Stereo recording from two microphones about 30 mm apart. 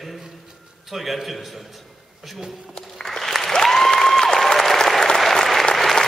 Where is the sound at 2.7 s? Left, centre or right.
Centre.